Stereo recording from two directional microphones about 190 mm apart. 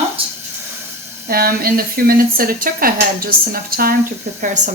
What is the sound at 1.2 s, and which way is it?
Speech, 50° right (ahead or behind).